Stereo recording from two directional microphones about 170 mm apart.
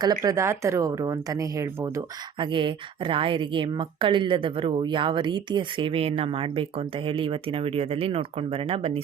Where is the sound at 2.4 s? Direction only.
30° right (ahead or behind).